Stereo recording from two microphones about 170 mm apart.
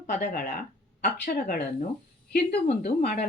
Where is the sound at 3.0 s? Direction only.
70° left (ahead or behind).